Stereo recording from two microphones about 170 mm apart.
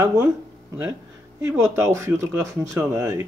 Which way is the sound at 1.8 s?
15° right (ahead or behind).